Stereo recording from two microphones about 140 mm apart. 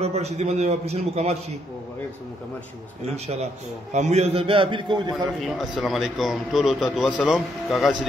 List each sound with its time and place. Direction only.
0.0 s a man's voice: 50° right (ahead or behind)
3.9 s a man's voice: 55° right (ahead or behind); by 5.1 s 35° right (ahead or behind)
5.4 s a man's voice: centre (ahead or behind)